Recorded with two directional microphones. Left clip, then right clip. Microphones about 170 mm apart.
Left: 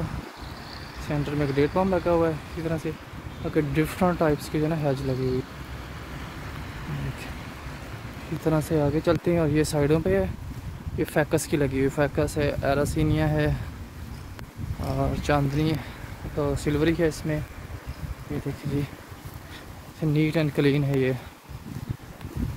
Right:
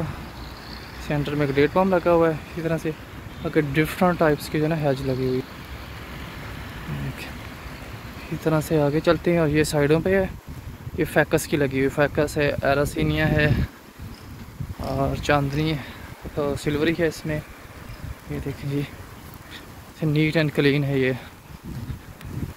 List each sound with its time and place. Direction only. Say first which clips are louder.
1.0 s speech: right 3 dB; centre (ahead or behind)
8.5 s speech: right 3 dB; 10° left (ahead or behind)
14.8 s speech: right 3 dB; centre (ahead or behind)
15.5 s speech: right 1 dB; 15° left (ahead or behind)
20.0 s speech: right 3 dB; 5° left (ahead or behind)